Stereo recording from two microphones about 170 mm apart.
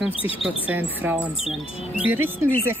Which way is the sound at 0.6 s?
10° right (ahead or behind).